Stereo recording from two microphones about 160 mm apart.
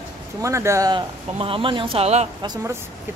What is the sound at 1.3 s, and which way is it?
Speech, 35° right (ahead or behind).